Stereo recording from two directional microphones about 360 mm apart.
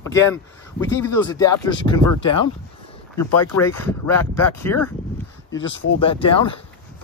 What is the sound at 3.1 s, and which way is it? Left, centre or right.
Speech, left.